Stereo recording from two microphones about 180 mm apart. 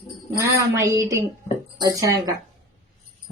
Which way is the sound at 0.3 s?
15° right (ahead or behind).